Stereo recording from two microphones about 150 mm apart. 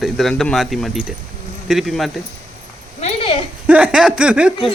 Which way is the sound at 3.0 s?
40° left (ahead or behind).